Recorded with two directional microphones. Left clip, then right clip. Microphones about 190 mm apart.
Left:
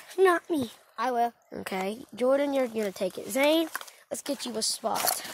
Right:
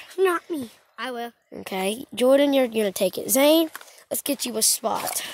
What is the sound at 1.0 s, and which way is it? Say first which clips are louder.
Speech: left 4 dB; 25° right (ahead or behind).